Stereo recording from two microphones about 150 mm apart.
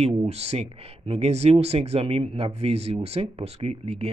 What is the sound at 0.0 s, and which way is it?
Speech, 40° right (ahead or behind).